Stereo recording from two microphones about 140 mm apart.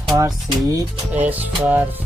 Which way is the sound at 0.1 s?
20° right (ahead or behind).